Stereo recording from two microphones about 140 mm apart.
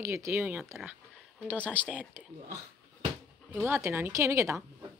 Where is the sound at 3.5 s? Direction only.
15° right (ahead or behind).